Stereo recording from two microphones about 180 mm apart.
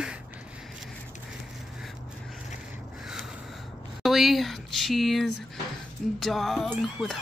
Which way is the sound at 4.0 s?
Centre (ahead or behind).